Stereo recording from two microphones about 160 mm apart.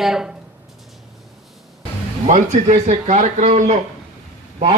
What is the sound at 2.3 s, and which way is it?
A man's voice, 45° right (ahead or behind).